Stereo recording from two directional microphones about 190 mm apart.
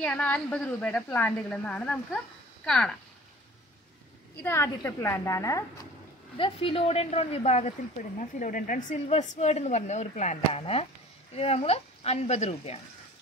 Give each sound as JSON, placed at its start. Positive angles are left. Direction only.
{"t": 0.0, "sound": "a woman's voice", "side_deg": 5}
{"t": 4.4, "sound": "a woman's voice", "side_deg": 15}
{"t": 6.3, "sound": "speech", "side_deg": 30}